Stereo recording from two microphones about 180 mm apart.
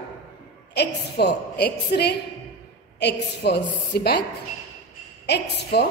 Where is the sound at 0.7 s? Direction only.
65° left (ahead or behind).